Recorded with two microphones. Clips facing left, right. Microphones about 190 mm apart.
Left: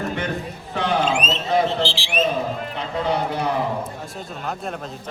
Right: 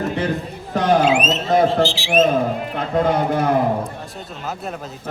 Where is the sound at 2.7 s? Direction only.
50° right (ahead or behind).